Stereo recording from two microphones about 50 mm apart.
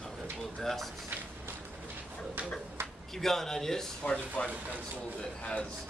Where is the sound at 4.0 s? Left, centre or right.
Centre.